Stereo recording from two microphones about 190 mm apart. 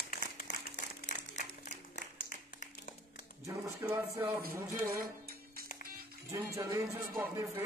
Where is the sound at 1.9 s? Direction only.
40° left (ahead or behind).